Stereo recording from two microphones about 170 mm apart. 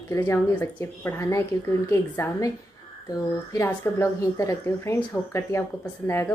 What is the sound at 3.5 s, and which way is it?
A woman's voice, 15° left (ahead or behind).